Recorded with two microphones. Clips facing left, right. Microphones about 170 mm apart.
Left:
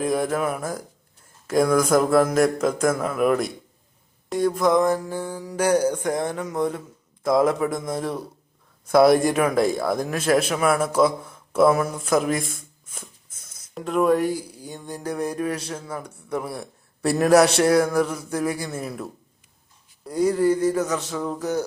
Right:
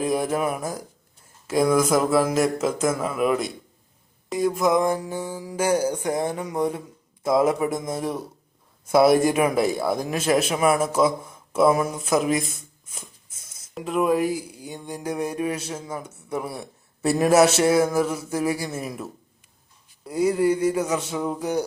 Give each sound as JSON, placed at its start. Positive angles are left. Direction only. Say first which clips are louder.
{"t": 0.0, "sound": "music", "louder": "even", "side_deg": -10}
{"t": 1.5, "sound": "speech", "louder": "left 1 dB", "side_deg": -5}
{"t": 4.3, "sound": "music", "louder": "left 1 dB", "side_deg": -5}
{"t": 8.9, "sound": "speech", "louder": "left 1 dB", "side_deg": -5}
{"t": 10.1, "sound": "music", "louder": "left 1 dB", "side_deg": -10}
{"t": 12.5, "sound": "shuffling cards", "louder": "left 2 dB", "side_deg": 55}
{"t": 13.3, "sound": "a sound", "louder": "left 1 dB", "side_deg": -25}
{"t": 13.7, "sound": "music", "louder": "left 2 dB", "side_deg": 0}
{"t": 16.3, "sound": "a man's voice", "louder": "left 1 dB", "side_deg": -5}
{"t": 18.3, "sound": "music", "louder": "right 1 dB", "side_deg": -10}